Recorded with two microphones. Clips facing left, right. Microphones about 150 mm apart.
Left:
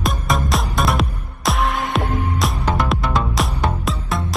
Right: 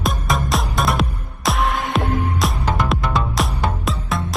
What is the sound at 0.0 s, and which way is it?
Music, centre (ahead or behind).